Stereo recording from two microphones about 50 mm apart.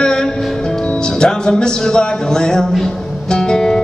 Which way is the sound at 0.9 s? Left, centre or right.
Centre.